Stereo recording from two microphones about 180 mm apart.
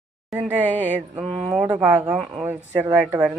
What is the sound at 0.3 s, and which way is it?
Speech, 5° right (ahead or behind).